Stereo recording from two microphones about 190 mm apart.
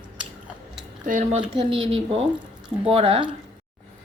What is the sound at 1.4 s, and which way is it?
Speech, 30° right (ahead or behind).